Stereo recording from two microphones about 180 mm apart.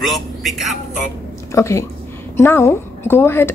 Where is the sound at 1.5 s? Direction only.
15° left (ahead or behind).